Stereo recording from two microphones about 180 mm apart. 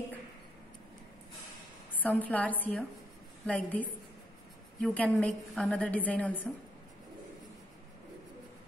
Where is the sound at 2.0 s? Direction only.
10° left (ahead or behind).